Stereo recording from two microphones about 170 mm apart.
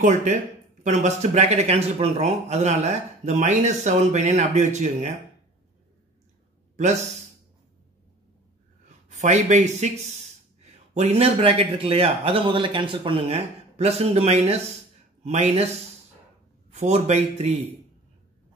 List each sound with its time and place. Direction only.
0.0 s speech: 45° right (ahead or behind)
8.8 s speech: 45° right (ahead or behind)
16.7 s speech: 40° right (ahead or behind)